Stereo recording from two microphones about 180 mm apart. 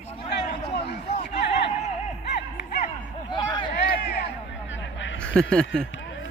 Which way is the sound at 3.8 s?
65° left (ahead or behind).